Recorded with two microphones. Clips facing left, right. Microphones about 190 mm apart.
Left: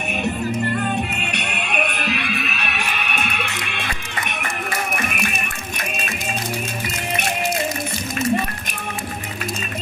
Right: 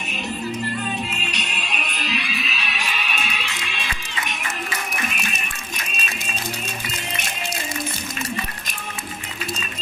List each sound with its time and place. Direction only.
0.7 s music: 55° left (ahead or behind)